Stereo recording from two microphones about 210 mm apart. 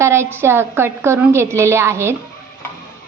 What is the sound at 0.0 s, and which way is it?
A woman's voice, 10° right (ahead or behind).